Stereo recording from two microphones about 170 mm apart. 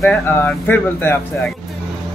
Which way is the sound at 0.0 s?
10° left (ahead or behind).